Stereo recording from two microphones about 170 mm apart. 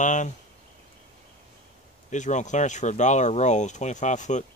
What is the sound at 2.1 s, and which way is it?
Speech, 45° left (ahead or behind).